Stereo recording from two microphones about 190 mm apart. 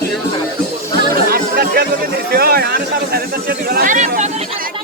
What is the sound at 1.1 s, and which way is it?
Chatter, 50° right (ahead or behind).